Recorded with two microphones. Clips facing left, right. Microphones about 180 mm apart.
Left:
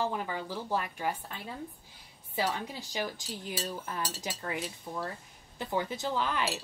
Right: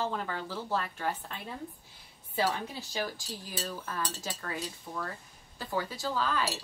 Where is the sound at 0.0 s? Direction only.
15° left (ahead or behind).